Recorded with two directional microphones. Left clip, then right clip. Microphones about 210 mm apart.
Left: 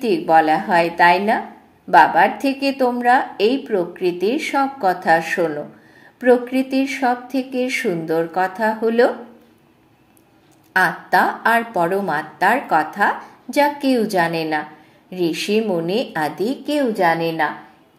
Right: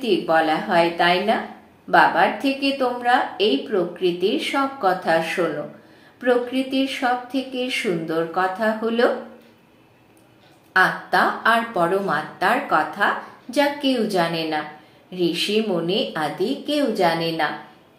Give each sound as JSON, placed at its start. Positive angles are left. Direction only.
{"t": 0.0, "sound": "a woman's voice", "side_deg": 45}
{"t": 10.7, "sound": "a woman's voice", "side_deg": 45}